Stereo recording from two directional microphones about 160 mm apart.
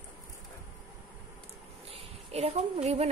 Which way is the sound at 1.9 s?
40° right (ahead or behind).